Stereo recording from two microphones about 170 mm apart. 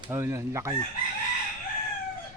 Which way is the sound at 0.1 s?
15° right (ahead or behind).